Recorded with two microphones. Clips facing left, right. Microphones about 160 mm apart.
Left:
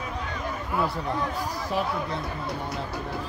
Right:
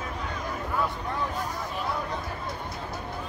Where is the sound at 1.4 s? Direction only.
80° left.